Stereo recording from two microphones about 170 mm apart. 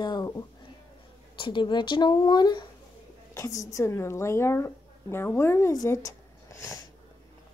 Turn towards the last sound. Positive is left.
turn(degrees=20)  # may be behind; listen again after turning